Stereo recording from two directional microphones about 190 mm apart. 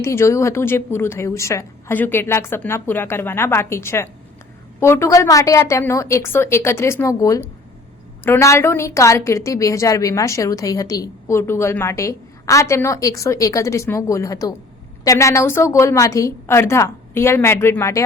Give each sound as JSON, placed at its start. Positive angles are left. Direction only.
{"t": 0.0, "sound": "a woman's voice", "side_deg": 15}